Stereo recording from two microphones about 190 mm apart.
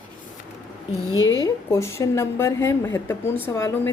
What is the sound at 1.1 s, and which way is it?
Speech, 90° left.